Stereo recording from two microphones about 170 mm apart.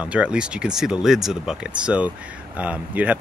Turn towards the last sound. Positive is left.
turn(degrees=-10)  # may be behind; listen again after turning